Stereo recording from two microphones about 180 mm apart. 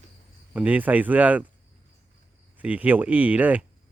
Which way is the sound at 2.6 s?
10° right (ahead or behind).